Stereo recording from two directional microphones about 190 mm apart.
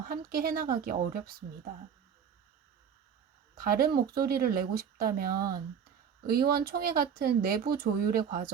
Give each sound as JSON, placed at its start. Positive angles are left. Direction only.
{"t": 0.0, "sound": "speech", "side_deg": -50}
{"t": 3.6, "sound": "speech", "side_deg": -50}